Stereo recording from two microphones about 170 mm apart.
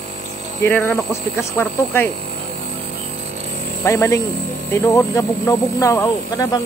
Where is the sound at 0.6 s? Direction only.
10° left (ahead or behind).